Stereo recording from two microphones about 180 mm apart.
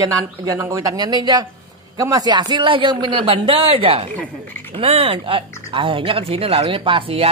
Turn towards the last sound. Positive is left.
turn(degrees=-30)  # may be behind; listen again after turning